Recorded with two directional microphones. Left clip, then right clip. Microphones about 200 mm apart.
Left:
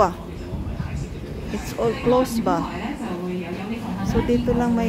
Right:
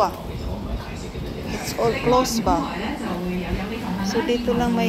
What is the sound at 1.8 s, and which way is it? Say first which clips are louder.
Speech: right 1 dB; 30° left (ahead or behind).